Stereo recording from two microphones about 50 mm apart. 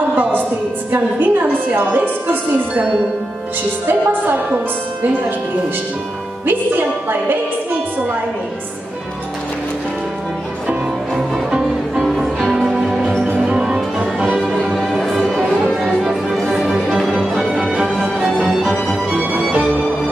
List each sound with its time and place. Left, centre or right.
0.1 s a sound: right
0.9 s a woman's voice: right
3.8 s a woman's voice: right
6.4 s speech: right
12.0 s music: centre
13.4 s music: centre
14.7 s music: centre
15.2 s music: centre
15.7 s music: centre
16.5 s music: centre
18.6 s music: centre
19.1 s music: right